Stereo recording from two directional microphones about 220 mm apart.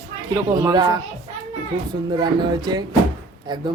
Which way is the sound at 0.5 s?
20° right (ahead or behind).